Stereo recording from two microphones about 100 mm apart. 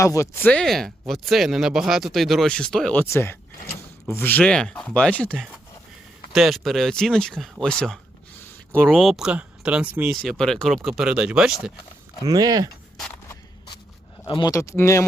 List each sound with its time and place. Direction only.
0.0 s speech: 30° left (ahead or behind)
0.3 s speech: 15° left (ahead or behind)
0.6 s speech: 5° left (ahead or behind)
2.9 s speech: 20° left (ahead or behind)
6.3 s speech: centre (ahead or behind)
8.9 s speech: centre (ahead or behind)
10.2 s speech: 5° left (ahead or behind)
12.2 s speech: 40° right (ahead or behind)
14.4 s speech: 30° left (ahead or behind)